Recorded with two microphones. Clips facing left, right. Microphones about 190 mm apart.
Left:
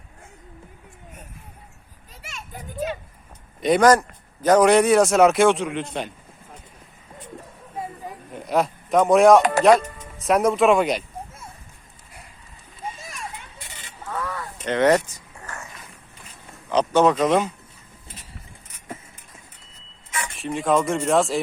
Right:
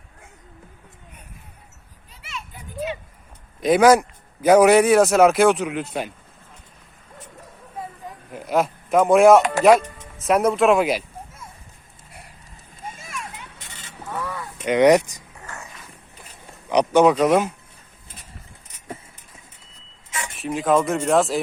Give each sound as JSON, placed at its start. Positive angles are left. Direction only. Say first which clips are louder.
{"t": 2.2, "sound": "children playing", "louder": "even", "side_deg": 45}
{"t": 3.6, "sound": "speech", "louder": "right 2 dB", "side_deg": -5}
{"t": 8.3, "sound": "a man's voice", "louder": "right 1 dB", "side_deg": 0}
{"t": 14.1, "sound": "honk", "louder": "even", "side_deg": -10}
{"t": 16.6, "sound": "speech", "louder": "right 2 dB", "side_deg": -15}
{"t": 20.3, "sound": "speech", "louder": "right 2 dB", "side_deg": 0}